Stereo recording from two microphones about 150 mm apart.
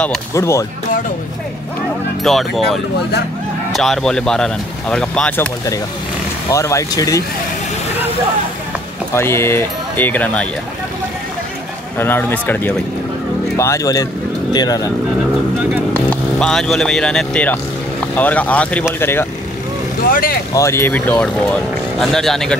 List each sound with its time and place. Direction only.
0.3 s speech: 20° left (ahead or behind)
2.2 s speech: centre (ahead or behind); by 7.2 s 25° left (ahead or behind)
9.1 s speech: 15° left (ahead or behind)
12.0 s speech: 15° left (ahead or behind)
15.9 s speech: 10° left (ahead or behind)
20.1 s speech: 70° left (ahead or behind)
20.5 s speech: 20° left (ahead or behind); by 22.6 s 5° left (ahead or behind)